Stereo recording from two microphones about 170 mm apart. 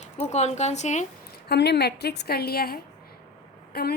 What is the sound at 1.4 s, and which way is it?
A woman's voice, 75° left (ahead or behind).